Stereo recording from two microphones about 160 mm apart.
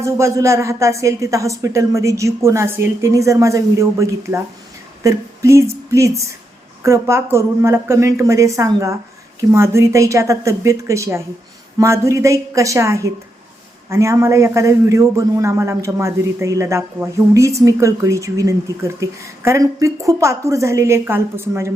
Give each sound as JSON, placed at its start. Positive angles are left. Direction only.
{"t": 0.0, "sound": "speech", "side_deg": -20}
{"t": 5.0, "sound": "a sound", "side_deg": -20}
{"t": 5.9, "sound": "a man's voice", "side_deg": -20}